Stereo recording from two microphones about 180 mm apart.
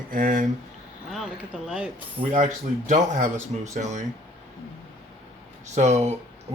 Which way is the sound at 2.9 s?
45° right (ahead or behind).